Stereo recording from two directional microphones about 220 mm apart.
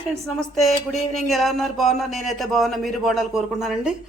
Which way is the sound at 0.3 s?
Centre (ahead or behind).